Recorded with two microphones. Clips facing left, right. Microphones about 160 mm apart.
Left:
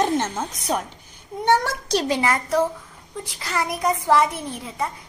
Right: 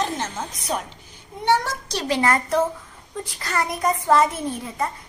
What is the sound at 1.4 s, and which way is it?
Speech, 45° left (ahead or behind).